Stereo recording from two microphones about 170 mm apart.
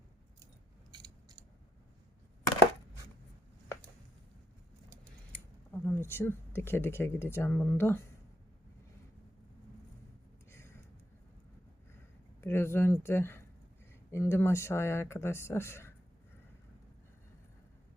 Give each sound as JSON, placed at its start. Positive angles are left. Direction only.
{"t": 0.9, "sound": "scissors", "side_deg": -25}
{"t": 5.3, "sound": "speech", "side_deg": 10}
{"t": 10.5, "sound": "a sound", "side_deg": 15}
{"t": 12.4, "sound": "speech", "side_deg": 15}